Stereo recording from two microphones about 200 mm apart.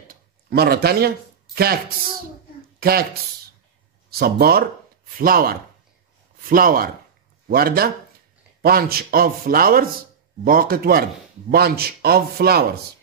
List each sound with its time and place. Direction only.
0.1 s a sound: 50° right (ahead or behind)
2.8 s speech: 50° right (ahead or behind)
4.1 s speech: 50° right (ahead or behind)